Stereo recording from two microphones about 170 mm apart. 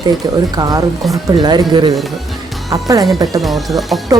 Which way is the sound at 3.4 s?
Centre (ahead or behind).